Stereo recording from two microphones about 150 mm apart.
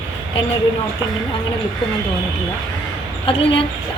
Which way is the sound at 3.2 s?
35° left (ahead or behind).